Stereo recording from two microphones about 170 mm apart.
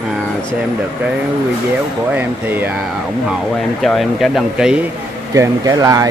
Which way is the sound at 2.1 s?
10° right (ahead or behind).